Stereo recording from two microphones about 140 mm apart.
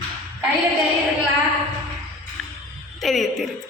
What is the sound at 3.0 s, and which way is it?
Speech, 5° left (ahead or behind).